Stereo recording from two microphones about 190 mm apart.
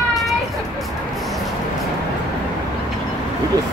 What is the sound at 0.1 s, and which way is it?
Vehicle, centre (ahead or behind).